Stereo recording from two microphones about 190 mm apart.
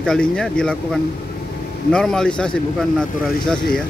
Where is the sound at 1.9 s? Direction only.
5° left (ahead or behind).